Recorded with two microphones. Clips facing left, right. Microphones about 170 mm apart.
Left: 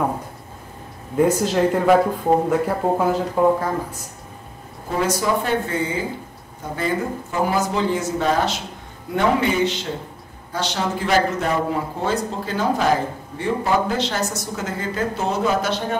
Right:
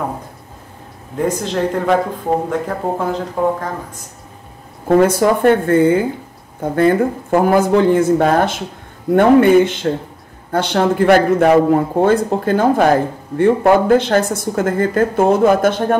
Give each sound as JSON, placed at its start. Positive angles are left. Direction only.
{"t": 1.1, "sound": "speech", "side_deg": 5}
{"t": 3.0, "sound": "speech", "side_deg": 5}
{"t": 4.8, "sound": "speech", "side_deg": -55}